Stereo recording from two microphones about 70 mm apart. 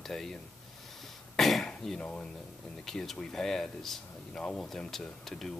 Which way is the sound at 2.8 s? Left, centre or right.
Centre.